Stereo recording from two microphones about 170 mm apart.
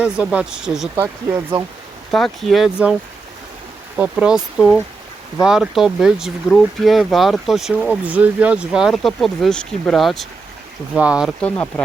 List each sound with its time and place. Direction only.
0.0 s speech: 5° right (ahead or behind)
0.9 s speech: 15° right (ahead or behind)
2.0 s speech: centre (ahead or behind)
3.9 s speech: 5° right (ahead or behind)
5.4 s speech: 5° right (ahead or behind)
11.3 s speech: 10° left (ahead or behind)